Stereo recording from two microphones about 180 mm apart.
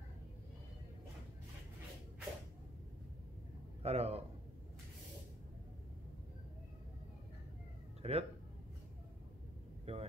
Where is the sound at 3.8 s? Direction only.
35° right (ahead or behind).